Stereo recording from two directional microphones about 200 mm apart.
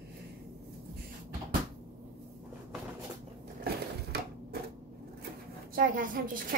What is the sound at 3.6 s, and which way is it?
Crushing, 50° right (ahead or behind).